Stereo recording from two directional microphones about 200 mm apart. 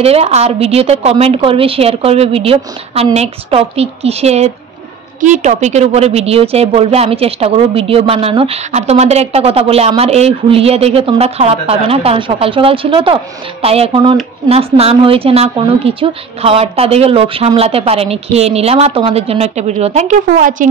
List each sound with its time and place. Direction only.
0.0 s a woman's voice: 30° right (ahead or behind)